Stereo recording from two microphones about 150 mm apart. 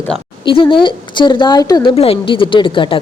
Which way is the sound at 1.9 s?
40° left (ahead or behind).